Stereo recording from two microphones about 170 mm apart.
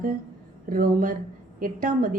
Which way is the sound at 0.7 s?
55° right (ahead or behind).